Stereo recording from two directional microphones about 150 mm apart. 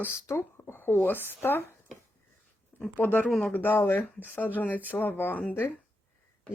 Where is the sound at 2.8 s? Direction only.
10° left (ahead or behind).